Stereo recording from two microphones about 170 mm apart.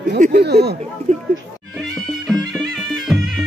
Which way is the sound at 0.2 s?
70° right (ahead or behind).